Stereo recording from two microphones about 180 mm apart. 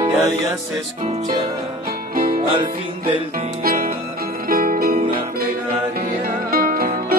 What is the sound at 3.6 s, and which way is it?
Music, 55° right (ahead or behind).